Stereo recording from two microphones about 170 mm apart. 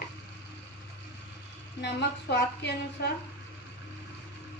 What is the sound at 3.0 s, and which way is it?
Speech, 70° left (ahead or behind).